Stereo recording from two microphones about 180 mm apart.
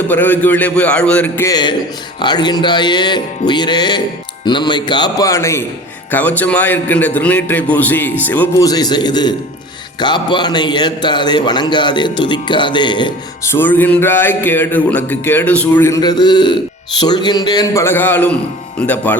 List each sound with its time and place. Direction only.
0.1 s speech: 10° left (ahead or behind)
1.5 s a man's voice: 25° left (ahead or behind)
13.5 s a man's voice: 10° left (ahead or behind)